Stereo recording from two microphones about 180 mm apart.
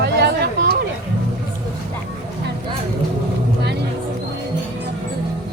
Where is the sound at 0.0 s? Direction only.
65° right (ahead or behind).